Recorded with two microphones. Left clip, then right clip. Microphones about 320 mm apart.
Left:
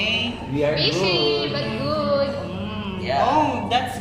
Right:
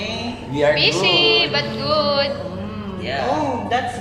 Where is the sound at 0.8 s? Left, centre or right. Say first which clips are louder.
Right 5 dB; right.